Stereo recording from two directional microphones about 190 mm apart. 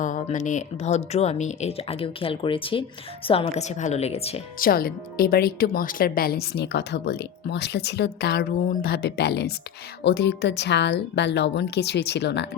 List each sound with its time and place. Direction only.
0.0 s speech: 40° left (ahead or behind)
4.6 s speech: 50° left (ahead or behind)